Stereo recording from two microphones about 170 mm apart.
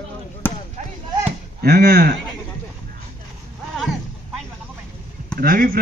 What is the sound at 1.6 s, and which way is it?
Speech, 65° right (ahead or behind).